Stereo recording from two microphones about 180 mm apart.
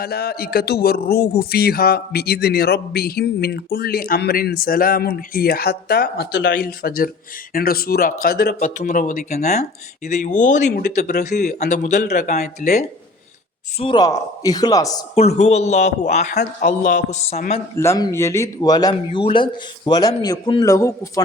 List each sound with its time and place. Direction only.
0.0 s speech: 60° left (ahead or behind)
8.5 s speech: 45° left (ahead or behind)
13.7 s a man's voice: 25° left (ahead or behind)
15.1 s speech: 35° left (ahead or behind)
17.7 s a man's voice: 20° left (ahead or behind)